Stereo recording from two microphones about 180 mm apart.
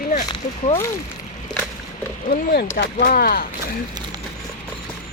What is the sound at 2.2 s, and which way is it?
Speech, 55° left (ahead or behind).